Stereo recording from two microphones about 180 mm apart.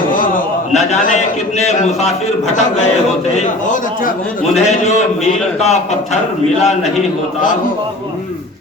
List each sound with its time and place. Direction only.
0.1 s a man's voice: 50° left (ahead or behind)
3.4 s a man's voice: 45° left (ahead or behind)